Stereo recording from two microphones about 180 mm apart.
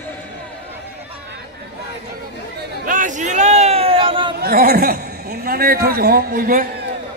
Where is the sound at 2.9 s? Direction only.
45° right (ahead or behind); by 4.3 s 30° right (ahead or behind).